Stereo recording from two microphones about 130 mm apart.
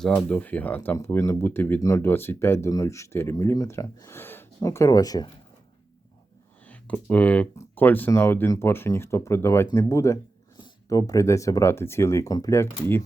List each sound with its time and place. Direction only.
0.0 s speech: 5° left (ahead or behind); by 5.3 s 30° left (ahead or behind)
6.7 s speech: 10° left (ahead or behind)